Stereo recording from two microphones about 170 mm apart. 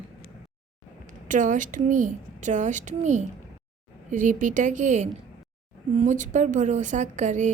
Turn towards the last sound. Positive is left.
turn(degrees=-45)  # may be behind; listen again after turning